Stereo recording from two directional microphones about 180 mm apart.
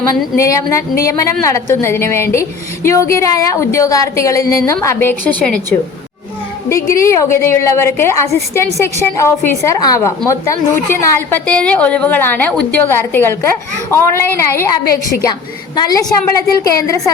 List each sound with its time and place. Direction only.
0.3 s a woman's voice: 15° left (ahead or behind)
6.8 s a woman's voice: 15° left (ahead or behind)